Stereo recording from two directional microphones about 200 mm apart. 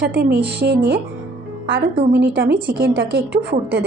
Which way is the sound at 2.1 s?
55° right (ahead or behind).